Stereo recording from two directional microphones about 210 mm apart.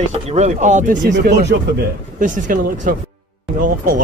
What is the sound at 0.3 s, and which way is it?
Speech, 35° right (ahead or behind).